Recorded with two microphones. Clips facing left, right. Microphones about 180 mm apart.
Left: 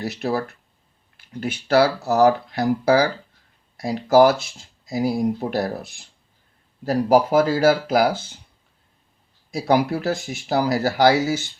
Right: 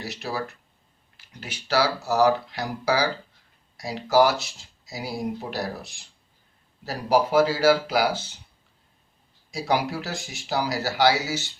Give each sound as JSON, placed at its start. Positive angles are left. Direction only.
{"t": 0.0, "sound": "speech", "side_deg": 55}
{"t": 9.5, "sound": "speech", "side_deg": 55}